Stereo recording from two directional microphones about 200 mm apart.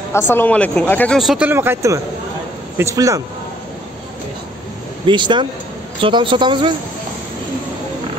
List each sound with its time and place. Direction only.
0.1 s a man's voice: 10° left (ahead or behind); by 3.2 s 15° right (ahead or behind)
5.0 s speech: 25° right (ahead or behind)